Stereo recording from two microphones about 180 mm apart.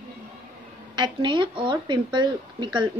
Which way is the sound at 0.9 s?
25° right (ahead or behind).